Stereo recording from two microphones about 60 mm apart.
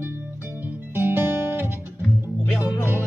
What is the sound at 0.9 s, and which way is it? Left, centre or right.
Music, right.